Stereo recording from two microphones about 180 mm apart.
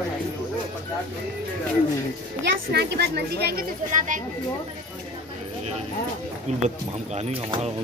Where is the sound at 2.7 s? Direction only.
65° right (ahead or behind); by 4.2 s 45° right (ahead or behind).